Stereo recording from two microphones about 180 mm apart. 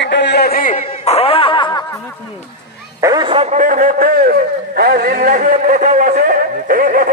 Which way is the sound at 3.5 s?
45° right (ahead or behind).